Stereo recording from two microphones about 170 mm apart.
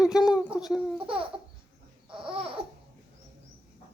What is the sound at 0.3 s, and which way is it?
Speech, 5° right (ahead or behind).